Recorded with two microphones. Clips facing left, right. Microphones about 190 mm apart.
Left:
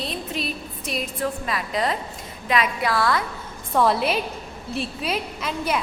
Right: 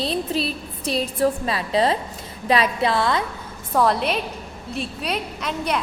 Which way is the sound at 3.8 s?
Centre (ahead or behind).